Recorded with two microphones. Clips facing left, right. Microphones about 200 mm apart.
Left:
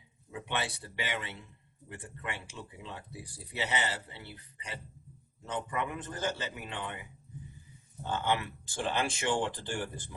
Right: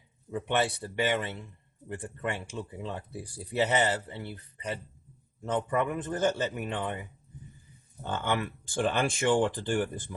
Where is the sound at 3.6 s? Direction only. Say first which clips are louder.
Right 8 dB; 50° right (ahead or behind).